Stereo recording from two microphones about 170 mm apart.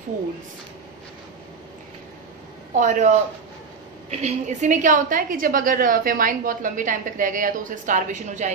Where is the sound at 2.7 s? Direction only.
45° right (ahead or behind).